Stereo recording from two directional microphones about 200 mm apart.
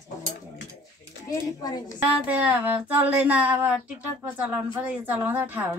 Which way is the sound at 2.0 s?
5° right (ahead or behind).